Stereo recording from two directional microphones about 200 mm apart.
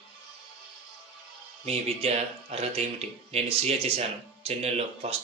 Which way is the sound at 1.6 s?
30° right (ahead or behind).